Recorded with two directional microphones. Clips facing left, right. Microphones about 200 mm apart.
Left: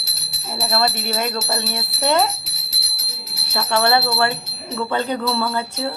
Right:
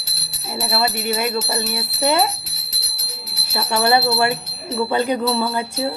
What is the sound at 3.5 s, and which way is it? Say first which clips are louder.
Speech: right 1 dB; 10° right (ahead or behind).